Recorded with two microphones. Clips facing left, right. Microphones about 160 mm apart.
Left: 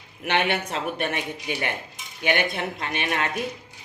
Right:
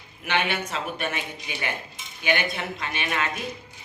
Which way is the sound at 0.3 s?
55° left (ahead or behind).